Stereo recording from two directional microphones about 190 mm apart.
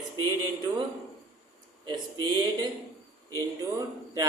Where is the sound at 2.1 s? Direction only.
20° right (ahead or behind).